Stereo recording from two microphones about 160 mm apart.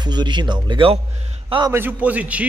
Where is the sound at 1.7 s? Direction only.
10° right (ahead or behind).